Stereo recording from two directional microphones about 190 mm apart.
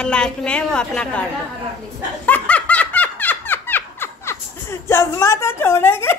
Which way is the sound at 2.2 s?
5° left (ahead or behind).